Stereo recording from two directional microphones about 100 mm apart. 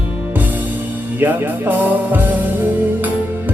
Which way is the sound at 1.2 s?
20° right (ahead or behind).